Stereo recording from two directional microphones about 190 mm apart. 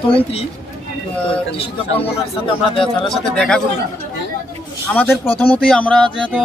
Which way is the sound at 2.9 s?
5° left (ahead or behind).